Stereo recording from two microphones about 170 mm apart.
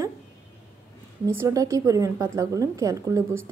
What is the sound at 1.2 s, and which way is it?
Speech, 15° right (ahead or behind).